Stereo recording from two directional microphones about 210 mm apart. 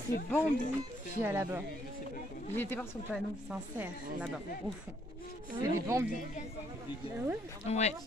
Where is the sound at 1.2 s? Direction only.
10° right (ahead or behind).